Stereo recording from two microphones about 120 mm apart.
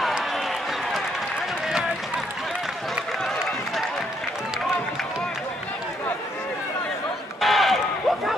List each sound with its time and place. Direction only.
7.4 s run: centre (ahead or behind)